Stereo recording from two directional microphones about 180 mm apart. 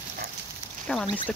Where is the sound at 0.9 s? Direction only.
5° left (ahead or behind).